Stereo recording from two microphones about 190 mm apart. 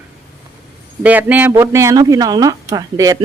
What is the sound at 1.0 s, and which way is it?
Speech, 10° right (ahead or behind).